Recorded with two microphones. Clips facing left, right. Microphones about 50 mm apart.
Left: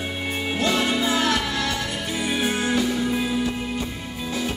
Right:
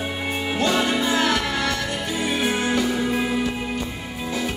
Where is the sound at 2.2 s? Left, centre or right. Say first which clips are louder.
Right 1 dB; centre.